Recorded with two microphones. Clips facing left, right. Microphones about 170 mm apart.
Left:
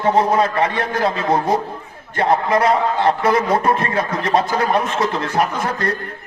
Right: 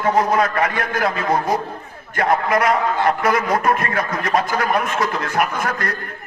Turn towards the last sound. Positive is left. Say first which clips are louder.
# left 2 dB
turn(degrees=30)  # may be behind; listen again after turning